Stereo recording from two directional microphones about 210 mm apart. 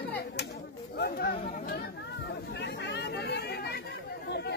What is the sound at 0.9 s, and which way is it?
Speech, 50° left (ahead or behind).